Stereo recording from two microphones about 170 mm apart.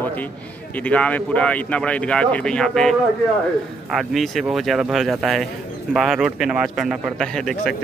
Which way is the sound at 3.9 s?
Centre (ahead or behind).